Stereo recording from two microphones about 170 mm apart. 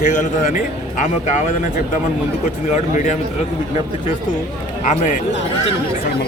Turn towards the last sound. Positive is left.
turn(degrees=45)  # may be behind; listen again after turning